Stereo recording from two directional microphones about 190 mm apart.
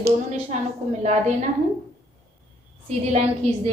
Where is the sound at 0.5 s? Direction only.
35° right (ahead or behind).